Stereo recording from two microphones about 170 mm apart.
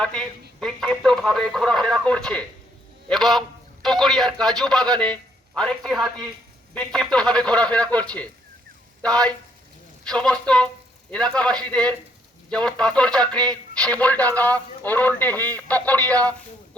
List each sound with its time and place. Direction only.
0.0 s a man's voice: 5° left (ahead or behind)